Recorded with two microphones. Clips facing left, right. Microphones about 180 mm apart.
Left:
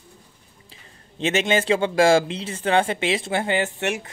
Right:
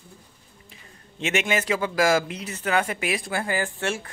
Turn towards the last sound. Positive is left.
turn(degrees=20)  # may be behind; listen again after turning